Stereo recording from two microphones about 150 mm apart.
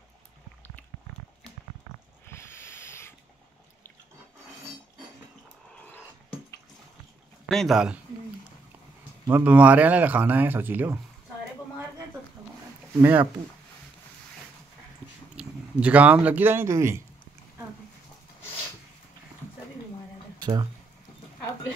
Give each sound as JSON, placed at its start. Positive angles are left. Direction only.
{"t": 2.2, "sound": "a sound", "side_deg": 15}
{"t": 7.4, "sound": "speech", "side_deg": 0}
{"t": 9.3, "sound": "speech", "side_deg": -10}
{"t": 12.9, "sound": "speech", "side_deg": -15}
{"t": 15.3, "sound": "speech", "side_deg": -10}
{"t": 20.3, "sound": "a sound", "side_deg": -30}